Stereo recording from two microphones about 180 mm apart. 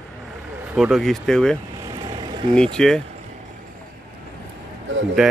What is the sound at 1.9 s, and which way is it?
Vehicle, 25° right (ahead or behind).